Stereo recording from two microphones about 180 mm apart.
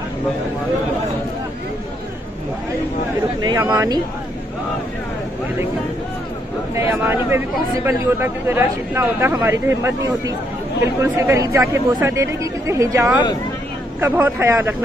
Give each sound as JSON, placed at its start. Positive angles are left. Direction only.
{"t": 3.3, "sound": "speech", "side_deg": -20}
{"t": 6.7, "sound": "speech", "side_deg": -15}